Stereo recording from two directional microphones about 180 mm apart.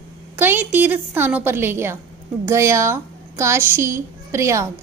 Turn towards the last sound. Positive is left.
turn(degrees=-15)  # may be behind; listen again after turning